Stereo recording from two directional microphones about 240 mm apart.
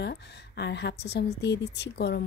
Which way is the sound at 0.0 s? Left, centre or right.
Left.